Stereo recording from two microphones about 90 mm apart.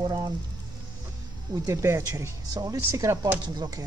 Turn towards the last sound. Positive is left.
turn(degrees=-50)  # may be behind; listen again after turning